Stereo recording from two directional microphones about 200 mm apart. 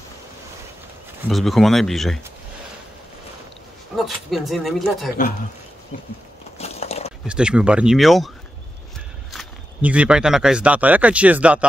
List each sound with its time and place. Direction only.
1.3 s speech: centre (ahead or behind)
3.9 s speech: centre (ahead or behind)
6.6 s a sound: 30° left (ahead or behind)
7.2 s speech: 5° right (ahead or behind)
9.3 s speech: 5° right (ahead or behind)